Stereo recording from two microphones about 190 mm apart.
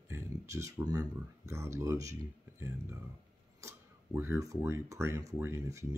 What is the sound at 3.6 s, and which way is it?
Speech, 15° right (ahead or behind).